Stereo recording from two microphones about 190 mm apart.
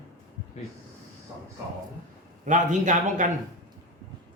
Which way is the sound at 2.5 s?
40° right (ahead or behind).